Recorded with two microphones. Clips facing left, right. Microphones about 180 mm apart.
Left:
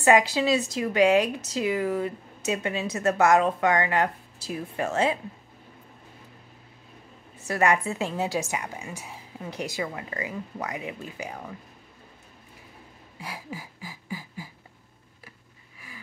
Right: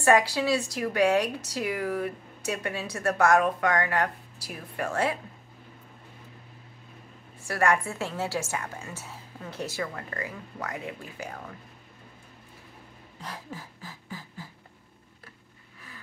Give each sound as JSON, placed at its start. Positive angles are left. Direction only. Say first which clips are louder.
{"t": 0.0, "sound": "a woman's voice", "louder": "left 2 dB", "side_deg": 20}
{"t": 7.4, "sound": "a woman's voice", "louder": "left 2 dB", "side_deg": 20}
{"t": 13.2, "sound": "a sound", "louder": "left 2 dB", "side_deg": 10}